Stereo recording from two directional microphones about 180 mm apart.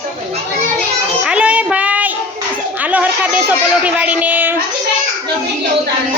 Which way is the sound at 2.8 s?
10° right (ahead or behind).